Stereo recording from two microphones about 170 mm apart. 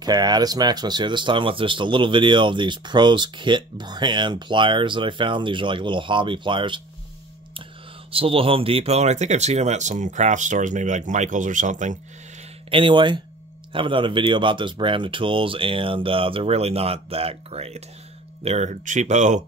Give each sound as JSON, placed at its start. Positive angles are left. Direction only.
{"t": 0.0, "sound": "speech", "side_deg": -25}
{"t": 8.1, "sound": "speech", "side_deg": -35}
{"t": 12.7, "sound": "speech", "side_deg": -30}